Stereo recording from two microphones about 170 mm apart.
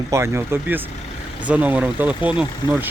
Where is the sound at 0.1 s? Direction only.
15° right (ahead or behind).